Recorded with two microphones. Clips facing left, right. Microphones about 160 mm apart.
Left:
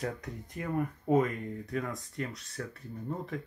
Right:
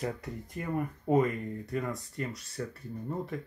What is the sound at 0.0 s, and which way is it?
Speech, centre (ahead or behind).